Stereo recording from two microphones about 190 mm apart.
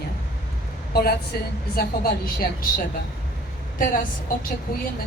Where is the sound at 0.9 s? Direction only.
60° left (ahead or behind).